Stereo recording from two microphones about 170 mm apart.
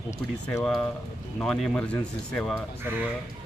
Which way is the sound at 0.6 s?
5° left (ahead or behind).